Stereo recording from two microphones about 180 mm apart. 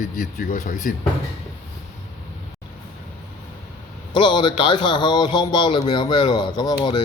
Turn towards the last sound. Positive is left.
turn(degrees=25)  # may be behind; listen again after turning